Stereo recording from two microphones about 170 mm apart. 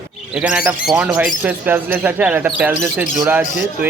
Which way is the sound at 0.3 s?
10° right (ahead or behind).